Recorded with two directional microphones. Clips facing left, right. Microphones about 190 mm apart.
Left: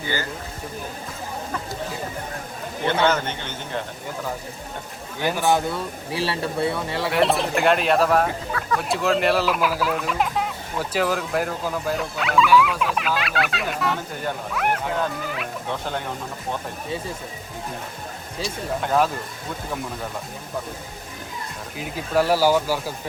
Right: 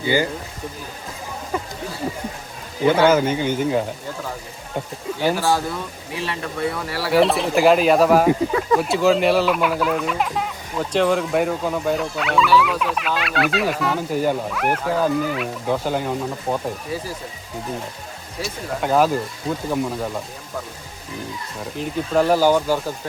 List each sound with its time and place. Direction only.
0.0 s speech: 15° right (ahead or behind)
2.8 s speech: 10° right (ahead or behind)
5.4 s speech: 20° left (ahead or behind)
6.1 s speech: 35° left (ahead or behind)
7.1 s speech: centre (ahead or behind)
8.3 s speech: 20° right (ahead or behind)
8.8 s speech: centre (ahead or behind)
18.4 s speech: centre (ahead or behind)
21.8 s speech: 5° left (ahead or behind)